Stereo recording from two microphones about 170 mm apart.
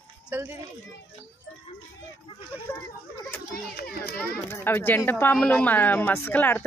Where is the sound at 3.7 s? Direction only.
65° left (ahead or behind).